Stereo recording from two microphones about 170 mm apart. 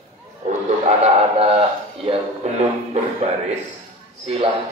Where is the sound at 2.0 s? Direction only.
40° right (ahead or behind).